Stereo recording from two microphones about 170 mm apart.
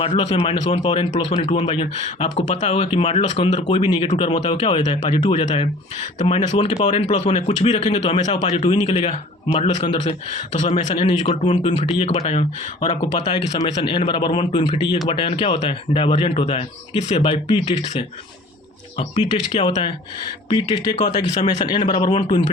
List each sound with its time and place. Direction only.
0.0 s speech: 35° left (ahead or behind)
8.7 s speech: 30° left (ahead or behind)
10.0 s speech: 45° left (ahead or behind)
11.6 s speech: 30° left (ahead or behind)
13.0 s speech: 25° left (ahead or behind)
18.9 s speech: 35° left (ahead or behind)